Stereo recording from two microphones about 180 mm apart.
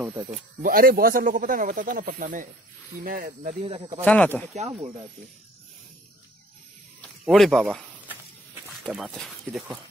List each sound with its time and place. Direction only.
0.6 s speech: 55° right (ahead or behind)
3.6 s speech: 30° right (ahead or behind)
4.0 s speech: 10° left (ahead or behind)
4.6 s speech: 35° right (ahead or behind)
7.0 s snake: centre (ahead or behind)
8.6 s speech: centre (ahead or behind)